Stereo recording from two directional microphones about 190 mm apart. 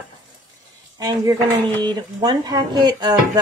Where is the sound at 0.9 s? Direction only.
20° right (ahead or behind).